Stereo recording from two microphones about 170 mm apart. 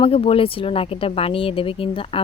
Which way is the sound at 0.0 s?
35° left (ahead or behind).